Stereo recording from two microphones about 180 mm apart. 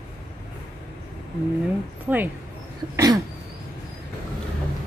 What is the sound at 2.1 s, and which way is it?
Speech, 10° right (ahead or behind).